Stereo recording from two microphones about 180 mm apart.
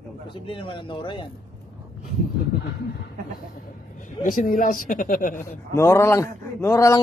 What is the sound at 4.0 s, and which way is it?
Speech, 50° left (ahead or behind).